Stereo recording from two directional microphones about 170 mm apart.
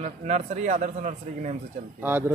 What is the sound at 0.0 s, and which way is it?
A man's voice, 40° right (ahead or behind).